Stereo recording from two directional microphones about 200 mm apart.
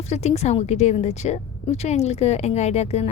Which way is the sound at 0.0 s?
35° left (ahead or behind).